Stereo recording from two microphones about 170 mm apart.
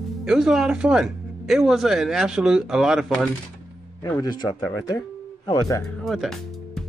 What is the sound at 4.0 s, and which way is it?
Speech, 20° left (ahead or behind).